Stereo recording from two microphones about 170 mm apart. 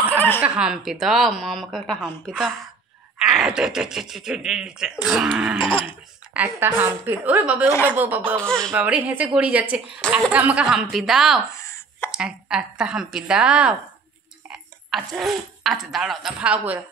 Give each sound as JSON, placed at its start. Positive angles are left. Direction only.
{"t": 0.4, "sound": "a woman's voice", "side_deg": -5}
{"t": 5.6, "sound": "livestock", "side_deg": 30}
{"t": 6.3, "sound": "speech", "side_deg": -10}
{"t": 8.5, "sound": "a woman's voice", "side_deg": 5}
{"t": 8.7, "sound": "a woman's voice", "side_deg": -10}
{"t": 11.5, "sound": "a sound", "side_deg": 15}
{"t": 12.1, "sound": "a woman's voice", "side_deg": -5}